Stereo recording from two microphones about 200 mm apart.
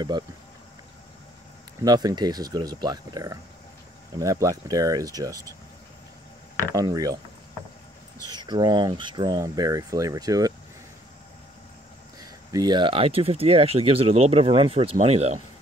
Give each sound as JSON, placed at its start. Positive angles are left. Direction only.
{"t": 1.8, "sound": "speech", "side_deg": -20}
{"t": 6.7, "sound": "speech", "side_deg": -15}
{"t": 8.3, "sound": "speech", "side_deg": -20}
{"t": 12.2, "sound": "speech", "side_deg": -20}